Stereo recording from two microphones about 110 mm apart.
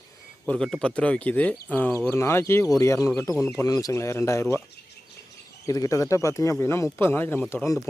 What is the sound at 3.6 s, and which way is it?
Speech, 30° left (ahead or behind).